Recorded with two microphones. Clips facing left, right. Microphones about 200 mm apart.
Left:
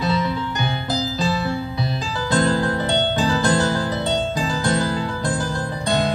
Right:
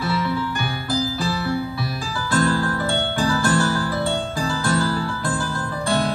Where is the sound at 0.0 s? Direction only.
20° left (ahead or behind).